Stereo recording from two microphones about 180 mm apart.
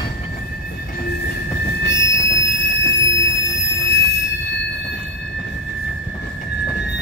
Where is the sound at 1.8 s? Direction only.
85° left.